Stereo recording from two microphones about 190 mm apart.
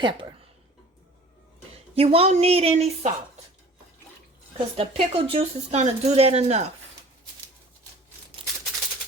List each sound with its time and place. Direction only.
0.0 s speech: 25° right (ahead or behind)
2.0 s speech: 30° right (ahead or behind)
4.5 s speech: 30° right (ahead or behind)